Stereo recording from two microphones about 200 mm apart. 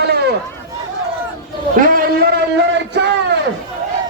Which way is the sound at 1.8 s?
50° right (ahead or behind).